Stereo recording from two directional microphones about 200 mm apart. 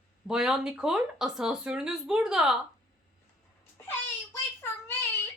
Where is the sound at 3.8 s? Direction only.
10° left (ahead or behind).